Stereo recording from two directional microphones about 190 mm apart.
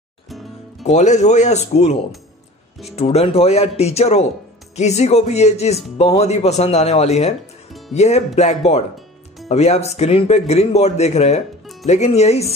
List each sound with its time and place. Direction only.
0.3 s music: centre (ahead or behind)
0.8 s speech: 40° left (ahead or behind)